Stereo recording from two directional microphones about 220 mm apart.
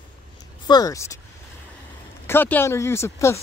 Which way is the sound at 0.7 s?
15° left (ahead or behind).